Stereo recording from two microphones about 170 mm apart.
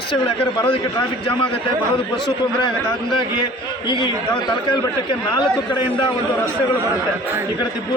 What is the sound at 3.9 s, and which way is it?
Speech, 30° left (ahead or behind).